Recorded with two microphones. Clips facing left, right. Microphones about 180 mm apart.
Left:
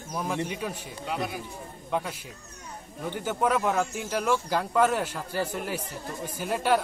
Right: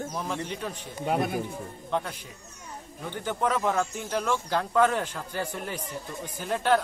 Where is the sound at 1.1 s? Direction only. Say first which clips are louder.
Right 5 dB; 50° right (ahead or behind).